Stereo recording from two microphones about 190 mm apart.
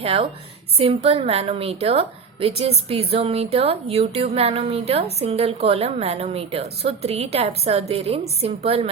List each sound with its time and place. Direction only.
0.0 s a woman's voice: 30° right (ahead or behind)